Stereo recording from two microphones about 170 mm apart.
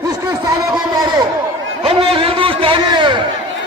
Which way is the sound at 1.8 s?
30° right (ahead or behind).